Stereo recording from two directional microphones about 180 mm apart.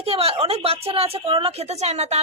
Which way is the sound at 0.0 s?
35° right (ahead or behind).